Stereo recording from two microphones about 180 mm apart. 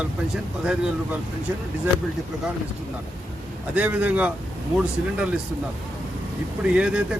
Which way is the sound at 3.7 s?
10° right (ahead or behind).